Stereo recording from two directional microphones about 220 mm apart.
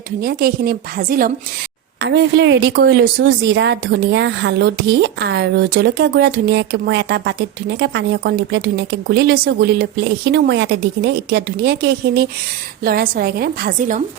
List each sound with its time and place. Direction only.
0.2 s speech: 45° right (ahead or behind)
2.0 s speech: 50° right (ahead or behind)